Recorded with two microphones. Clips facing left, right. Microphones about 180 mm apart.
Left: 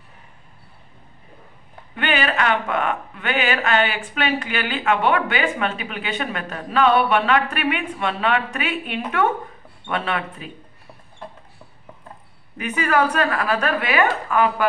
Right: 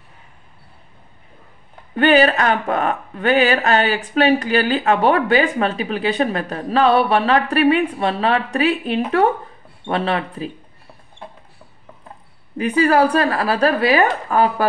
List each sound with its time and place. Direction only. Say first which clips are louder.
2.0 s speech: right 8 dB; 40° right (ahead or behind)
12.5 s speech: right 5 dB; 35° right (ahead or behind)